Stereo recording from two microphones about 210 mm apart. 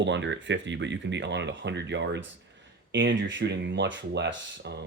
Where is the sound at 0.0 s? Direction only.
60° right (ahead or behind).